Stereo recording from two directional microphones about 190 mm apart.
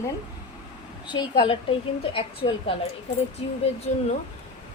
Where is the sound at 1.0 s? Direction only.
25° left (ahead or behind).